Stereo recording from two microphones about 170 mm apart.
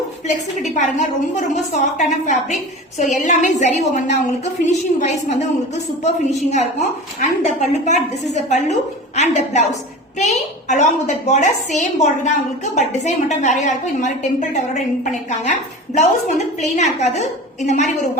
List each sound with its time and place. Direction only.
0.3 s a woman's voice: 45° left (ahead or behind)